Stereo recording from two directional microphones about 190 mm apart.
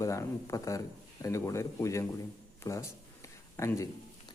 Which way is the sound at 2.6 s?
15° left (ahead or behind).